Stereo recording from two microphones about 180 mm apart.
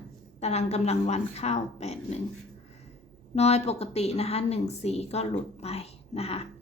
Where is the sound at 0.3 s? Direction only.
35° left (ahead or behind).